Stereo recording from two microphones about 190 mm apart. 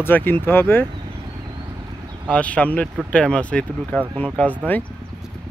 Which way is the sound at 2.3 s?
5° left (ahead or behind).